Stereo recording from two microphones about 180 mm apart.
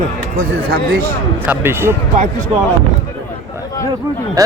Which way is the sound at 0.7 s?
60° right (ahead or behind).